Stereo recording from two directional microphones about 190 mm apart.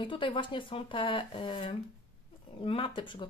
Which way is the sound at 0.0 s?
25° left (ahead or behind).